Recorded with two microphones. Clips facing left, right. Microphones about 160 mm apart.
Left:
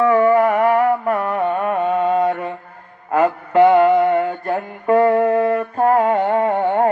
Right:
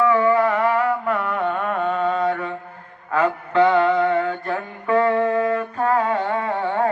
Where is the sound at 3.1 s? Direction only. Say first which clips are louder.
Left 4 dB; 45° left (ahead or behind).